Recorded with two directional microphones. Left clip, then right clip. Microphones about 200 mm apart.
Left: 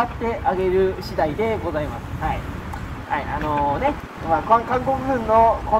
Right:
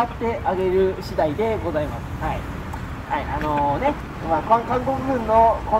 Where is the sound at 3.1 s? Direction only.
25° left (ahead or behind).